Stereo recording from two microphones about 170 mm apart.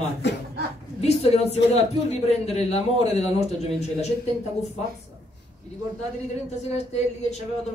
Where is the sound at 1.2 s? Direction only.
40° left (ahead or behind).